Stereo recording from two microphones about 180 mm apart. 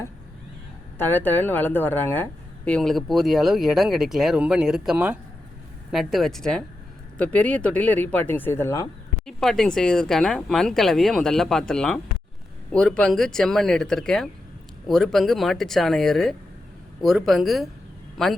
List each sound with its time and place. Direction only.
0.9 s a woman's voice: 10° left (ahead or behind)
9.2 s a woman's voice: centre (ahead or behind)